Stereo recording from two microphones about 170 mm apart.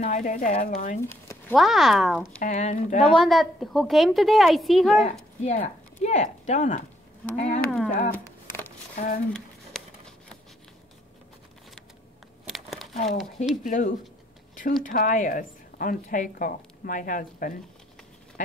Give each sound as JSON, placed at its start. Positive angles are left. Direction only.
{"t": 0.0, "sound": "a woman's voice", "side_deg": 45}
{"t": 1.5, "sound": "a woman's voice", "side_deg": 0}
{"t": 2.4, "sound": "a woman's voice", "side_deg": 45}
{"t": 3.1, "sound": "a woman's voice", "side_deg": 0}
{"t": 5.4, "sound": "a woman's voice", "side_deg": 40}
{"t": 7.6, "sound": "a sound", "side_deg": 5}
{"t": 8.9, "sound": "speech", "side_deg": 60}
{"t": 9.3, "sound": "a sound", "side_deg": 5}
{"t": 12.4, "sound": "crumpling", "side_deg": 0}
{"t": 12.9, "sound": "a woman's voice", "side_deg": 40}